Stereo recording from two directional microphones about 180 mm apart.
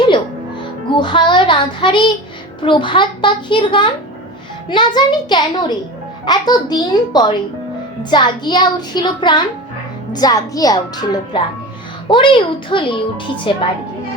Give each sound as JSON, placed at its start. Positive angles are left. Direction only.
{"t": 0.9, "sound": "music", "side_deg": 25}
{"t": 2.6, "sound": "speech", "side_deg": 25}
{"t": 4.9, "sound": "speech", "side_deg": 25}